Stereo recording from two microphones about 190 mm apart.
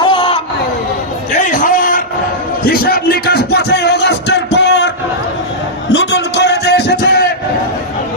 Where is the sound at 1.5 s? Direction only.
45° left (ahead or behind).